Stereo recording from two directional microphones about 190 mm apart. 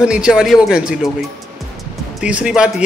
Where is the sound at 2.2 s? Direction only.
5° right (ahead or behind).